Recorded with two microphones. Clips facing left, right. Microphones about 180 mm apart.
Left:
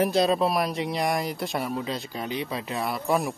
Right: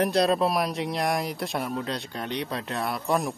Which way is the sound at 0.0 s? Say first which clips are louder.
Even; centre (ahead or behind).